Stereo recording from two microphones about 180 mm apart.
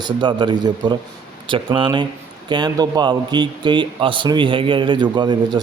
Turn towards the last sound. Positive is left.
turn(degrees=-25)  # may be behind; listen again after turning